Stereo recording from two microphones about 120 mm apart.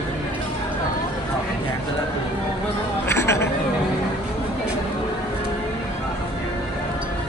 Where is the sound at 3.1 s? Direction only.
20° left (ahead or behind).